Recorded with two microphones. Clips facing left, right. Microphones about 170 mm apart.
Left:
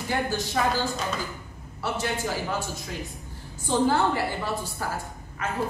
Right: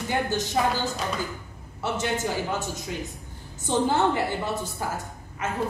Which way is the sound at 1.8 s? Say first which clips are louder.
Right 2 dB; 20° right (ahead or behind).